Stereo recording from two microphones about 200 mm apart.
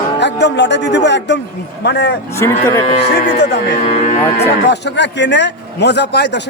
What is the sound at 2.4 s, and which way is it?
Speech, 15° left (ahead or behind).